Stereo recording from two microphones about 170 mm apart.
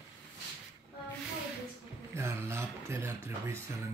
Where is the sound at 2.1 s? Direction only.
15° right (ahead or behind).